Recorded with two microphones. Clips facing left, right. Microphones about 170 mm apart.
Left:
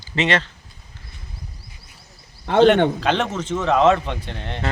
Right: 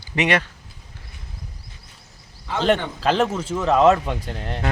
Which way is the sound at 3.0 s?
Centre (ahead or behind).